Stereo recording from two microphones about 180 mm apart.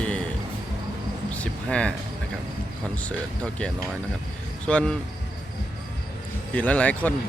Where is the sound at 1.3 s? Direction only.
5° left (ahead or behind).